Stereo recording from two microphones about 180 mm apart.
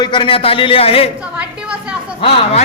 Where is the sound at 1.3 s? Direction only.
5° right (ahead or behind).